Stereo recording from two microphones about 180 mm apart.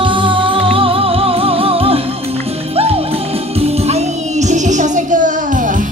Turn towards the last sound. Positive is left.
turn(degrees=-45)  # may be behind; listen again after turning